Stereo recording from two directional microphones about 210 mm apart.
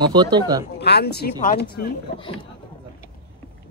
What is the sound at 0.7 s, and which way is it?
Speech, 50° left (ahead or behind).